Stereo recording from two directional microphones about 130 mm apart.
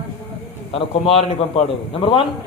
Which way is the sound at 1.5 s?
45° left (ahead or behind).